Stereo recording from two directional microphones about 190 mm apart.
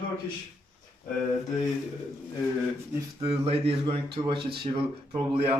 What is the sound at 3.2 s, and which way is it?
A man's voice, 30° right (ahead or behind).